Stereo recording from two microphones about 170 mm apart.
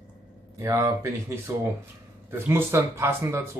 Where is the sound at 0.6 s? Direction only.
15° right (ahead or behind).